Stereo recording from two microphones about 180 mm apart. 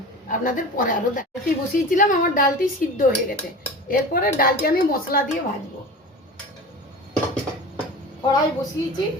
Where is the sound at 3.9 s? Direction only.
55° left (ahead or behind).